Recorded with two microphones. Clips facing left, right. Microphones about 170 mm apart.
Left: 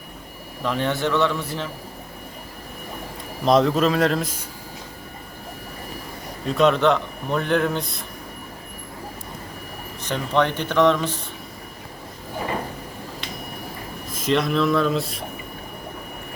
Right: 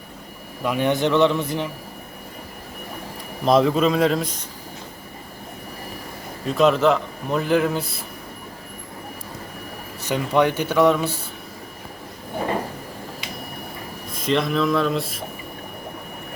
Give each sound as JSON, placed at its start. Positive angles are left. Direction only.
{"t": 0.6, "sound": "speech", "side_deg": -10}
{"t": 3.4, "sound": "a man's voice", "side_deg": 0}
{"t": 6.4, "sound": "a man's voice", "side_deg": 0}
{"t": 10.0, "sound": "speech", "side_deg": -10}
{"t": 14.1, "sound": "a man's voice", "side_deg": 0}